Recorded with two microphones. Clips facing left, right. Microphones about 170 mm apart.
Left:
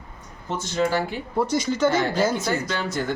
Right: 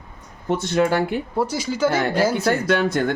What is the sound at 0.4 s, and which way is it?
Speech, 60° right (ahead or behind).